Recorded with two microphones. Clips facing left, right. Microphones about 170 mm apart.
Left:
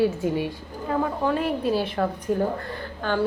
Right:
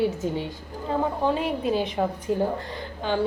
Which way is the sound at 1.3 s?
Centre (ahead or behind).